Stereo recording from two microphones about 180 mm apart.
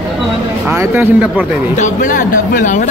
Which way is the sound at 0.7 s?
10° right (ahead or behind).